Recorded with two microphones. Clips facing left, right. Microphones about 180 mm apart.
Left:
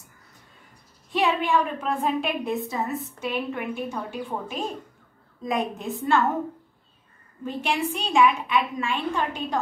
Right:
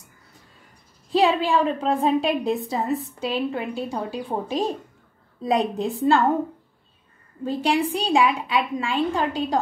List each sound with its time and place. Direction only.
1.1 s a woman's voice: 35° right (ahead or behind)
5.8 s a woman's voice: 30° right (ahead or behind)
7.4 s a woman's voice: 35° right (ahead or behind)